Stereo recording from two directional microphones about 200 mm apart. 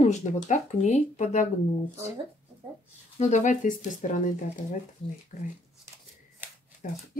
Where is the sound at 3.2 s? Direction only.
35° left (ahead or behind).